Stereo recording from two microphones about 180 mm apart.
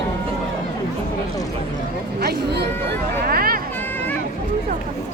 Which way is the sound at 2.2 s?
65° right (ahead or behind).